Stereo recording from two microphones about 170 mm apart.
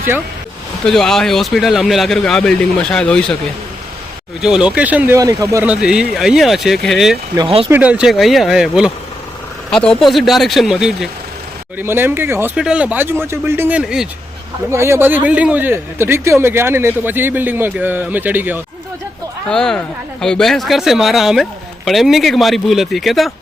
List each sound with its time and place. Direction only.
0.9 s speech: 5° left (ahead or behind)
4.4 s speech: 5° right (ahead or behind)
7.3 s speech: 30° right (ahead or behind)
7.7 s speech: 10° right (ahead or behind)
14.7 s speech: 15° right (ahead or behind)
19.5 s speech: 5° left (ahead or behind)